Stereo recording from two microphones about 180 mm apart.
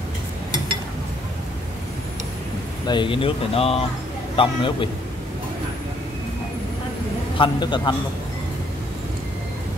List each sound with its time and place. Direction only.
2.9 s speech: 25° left (ahead or behind)
7.3 s speech: 25° left (ahead or behind)